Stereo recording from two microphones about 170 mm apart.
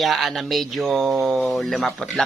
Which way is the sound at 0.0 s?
Centre (ahead or behind).